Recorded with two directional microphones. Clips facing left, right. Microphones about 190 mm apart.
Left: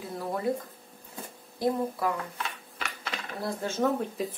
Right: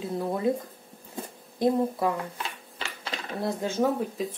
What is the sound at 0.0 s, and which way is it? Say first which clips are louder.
Speech: right 4 dB; 20° right (ahead or behind).